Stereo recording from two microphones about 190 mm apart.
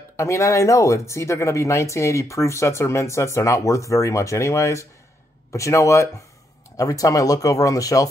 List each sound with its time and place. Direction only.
0.2 s speech: 15° left (ahead or behind)